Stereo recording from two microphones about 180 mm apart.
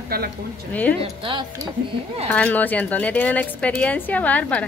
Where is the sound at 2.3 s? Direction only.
10° left (ahead or behind).